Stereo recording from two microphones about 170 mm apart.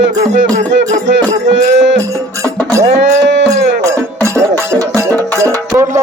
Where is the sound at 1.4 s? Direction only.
90° right.